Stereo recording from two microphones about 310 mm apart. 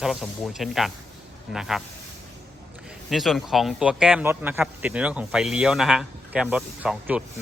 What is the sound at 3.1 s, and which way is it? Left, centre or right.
Speech, centre.